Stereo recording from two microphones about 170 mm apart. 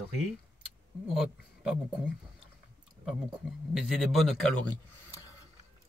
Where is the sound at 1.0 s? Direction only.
Centre (ahead or behind).